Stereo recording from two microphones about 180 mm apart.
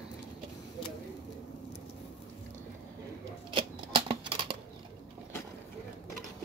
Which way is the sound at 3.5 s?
25° right (ahead or behind).